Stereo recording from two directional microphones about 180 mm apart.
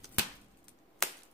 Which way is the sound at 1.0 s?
Centre (ahead or behind).